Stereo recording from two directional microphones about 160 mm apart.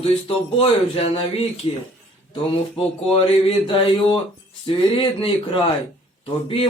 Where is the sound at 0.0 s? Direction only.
35° left (ahead or behind).